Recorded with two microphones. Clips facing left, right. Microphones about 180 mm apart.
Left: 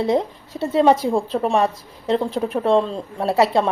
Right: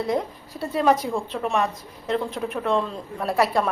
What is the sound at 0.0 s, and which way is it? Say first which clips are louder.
A woman's voice: left 5 dB; 25° left (ahead or behind).